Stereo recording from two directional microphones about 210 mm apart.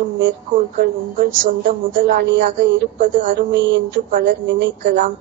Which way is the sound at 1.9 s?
55° right (ahead or behind).